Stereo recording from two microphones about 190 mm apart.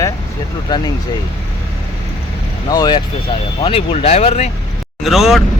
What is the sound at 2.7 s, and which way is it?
Speech, 20° left (ahead or behind).